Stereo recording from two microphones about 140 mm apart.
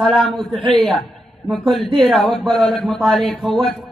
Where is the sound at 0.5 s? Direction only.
35° right (ahead or behind).